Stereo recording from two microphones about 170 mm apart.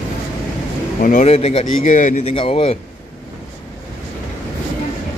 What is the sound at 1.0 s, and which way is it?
Speech, 45° left (ahead or behind).